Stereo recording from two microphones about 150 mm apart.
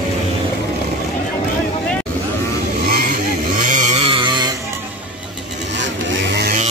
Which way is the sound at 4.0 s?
35° right (ahead or behind).